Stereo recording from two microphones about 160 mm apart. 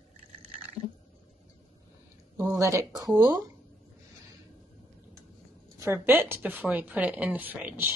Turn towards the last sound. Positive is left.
turn(degrees=-10)  # may be behind; listen again after turning